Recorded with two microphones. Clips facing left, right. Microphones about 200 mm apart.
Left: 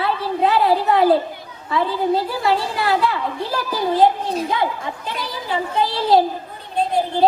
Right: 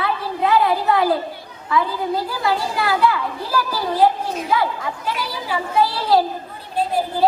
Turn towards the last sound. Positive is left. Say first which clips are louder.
# right 2 dB
turn(degrees=20)  # may be behind; listen again after turning